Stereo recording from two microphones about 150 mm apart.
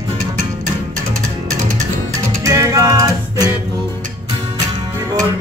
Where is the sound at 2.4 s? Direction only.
20° right (ahead or behind).